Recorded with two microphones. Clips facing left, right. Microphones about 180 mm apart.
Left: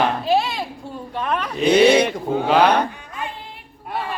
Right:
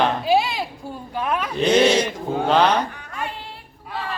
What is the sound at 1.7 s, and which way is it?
Speech, 60° left (ahead or behind).